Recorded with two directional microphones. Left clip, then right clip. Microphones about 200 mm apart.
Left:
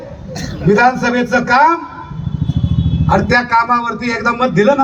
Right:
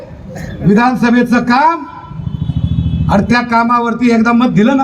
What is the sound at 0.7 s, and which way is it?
A man's voice, 45° right (ahead or behind).